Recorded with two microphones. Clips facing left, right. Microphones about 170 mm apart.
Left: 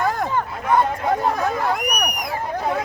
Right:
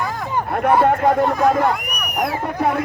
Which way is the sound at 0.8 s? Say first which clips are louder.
Right 5 dB; 65° right (ahead or behind).